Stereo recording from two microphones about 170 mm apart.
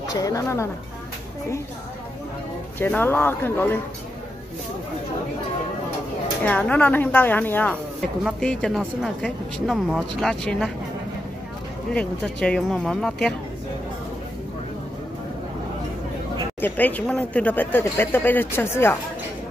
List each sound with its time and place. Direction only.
0.0 s speech: 20° left (ahead or behind)
2.8 s speech: 15° left (ahead or behind)
6.4 s speech: 10° left (ahead or behind)
11.9 s speech: 5° left (ahead or behind)
16.6 s speech: 10° left (ahead or behind)